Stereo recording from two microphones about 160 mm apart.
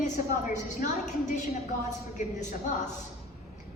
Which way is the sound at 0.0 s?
50° left (ahead or behind).